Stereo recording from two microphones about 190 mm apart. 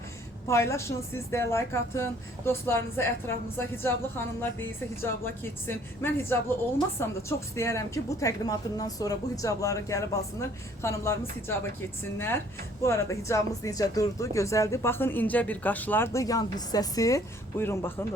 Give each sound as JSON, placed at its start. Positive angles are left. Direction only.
{"t": 0.4, "sound": "speech", "side_deg": 15}
{"t": 12.8, "sound": "speech", "side_deg": 15}